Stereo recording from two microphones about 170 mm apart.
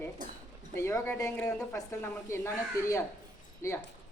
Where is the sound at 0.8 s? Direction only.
15° left (ahead or behind).